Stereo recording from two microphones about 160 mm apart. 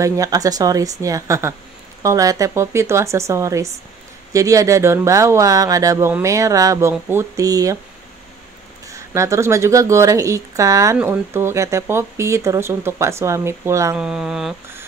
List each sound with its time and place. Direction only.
0.0 s speech: 20° right (ahead or behind)
8.8 s speech: 20° right (ahead or behind)
13.9 s a sound: 5° right (ahead or behind)